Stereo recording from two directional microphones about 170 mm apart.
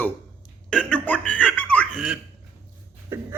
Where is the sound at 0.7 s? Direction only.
5° left (ahead or behind).